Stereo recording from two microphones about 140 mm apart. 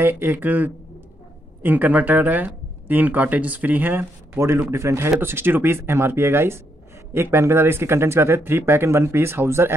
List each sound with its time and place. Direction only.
0.0 s speech: 15° right (ahead or behind)